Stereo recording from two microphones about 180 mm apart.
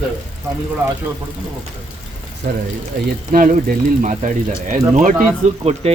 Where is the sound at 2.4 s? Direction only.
55° right (ahead or behind).